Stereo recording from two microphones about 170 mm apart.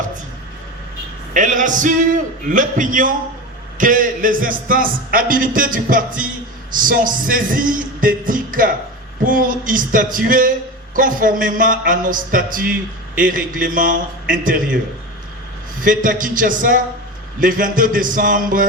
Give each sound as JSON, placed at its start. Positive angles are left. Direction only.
{"t": 1.3, "sound": "a man's voice", "side_deg": -50}
{"t": 15.8, "sound": "a man's voice", "side_deg": -50}